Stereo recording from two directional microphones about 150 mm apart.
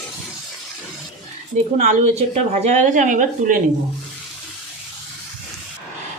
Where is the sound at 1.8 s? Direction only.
50° right (ahead or behind).